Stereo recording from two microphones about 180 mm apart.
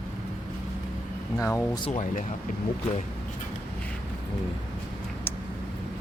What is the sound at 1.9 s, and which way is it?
Speech, 45° left (ahead or behind).